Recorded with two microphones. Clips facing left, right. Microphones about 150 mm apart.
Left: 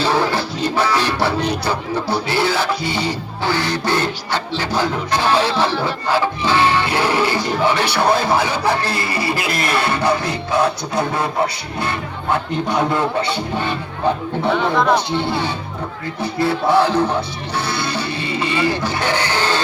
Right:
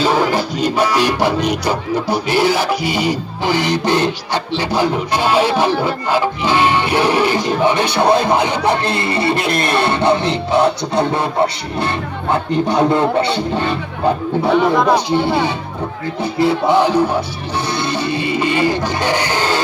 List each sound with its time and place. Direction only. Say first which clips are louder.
0.0 s music: right 3 dB; 15° right (ahead or behind)
1.5 s speech: right 3 dB; 15° right (ahead or behind)
12.3 s speech: right 3 dB; 25° right (ahead or behind)
14.5 s speech: right 3 dB; 5° right (ahead or behind)
16.4 s speech: right 2 dB; 20° right (ahead or behind)
17.7 s a sound: right 6 dB; 20° right (ahead or behind)